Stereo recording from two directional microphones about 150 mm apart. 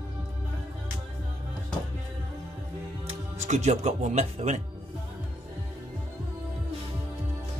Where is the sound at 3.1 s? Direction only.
50° right (ahead or behind).